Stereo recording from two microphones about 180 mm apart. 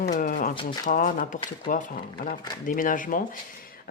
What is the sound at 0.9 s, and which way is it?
A woman's voice, 45° left (ahead or behind).